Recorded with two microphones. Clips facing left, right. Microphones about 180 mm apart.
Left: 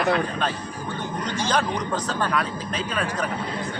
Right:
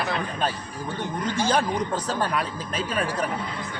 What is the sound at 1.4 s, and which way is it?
Speech, 10° right (ahead or behind).